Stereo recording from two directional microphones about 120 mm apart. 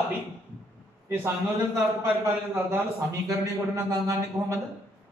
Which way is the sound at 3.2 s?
25° right (ahead or behind).